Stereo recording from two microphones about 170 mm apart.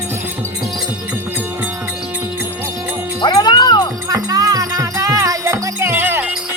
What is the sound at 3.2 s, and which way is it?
Music, 25° left (ahead or behind).